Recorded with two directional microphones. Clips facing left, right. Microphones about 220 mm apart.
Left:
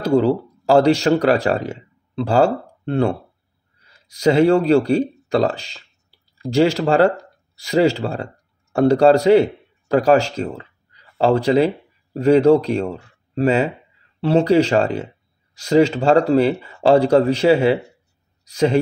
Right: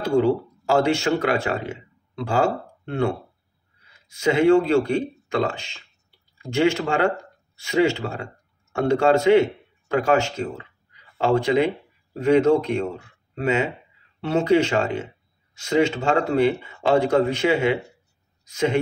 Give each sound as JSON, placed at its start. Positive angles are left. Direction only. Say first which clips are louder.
{"t": 0.0, "sound": "a man's voice", "louder": "left 3 dB", "side_deg": 35}